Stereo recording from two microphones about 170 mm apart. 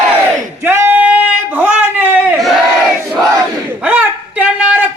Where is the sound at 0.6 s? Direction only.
15° right (ahead or behind).